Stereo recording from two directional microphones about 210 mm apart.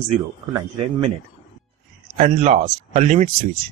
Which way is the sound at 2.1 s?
35° right (ahead or behind).